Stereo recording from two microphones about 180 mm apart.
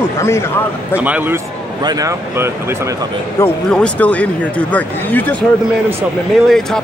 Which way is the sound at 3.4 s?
15° left (ahead or behind).